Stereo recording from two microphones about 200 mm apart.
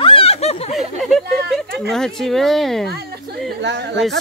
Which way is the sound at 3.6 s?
60° right (ahead or behind).